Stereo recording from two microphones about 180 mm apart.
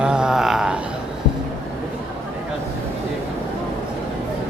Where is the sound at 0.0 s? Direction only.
5° right (ahead or behind).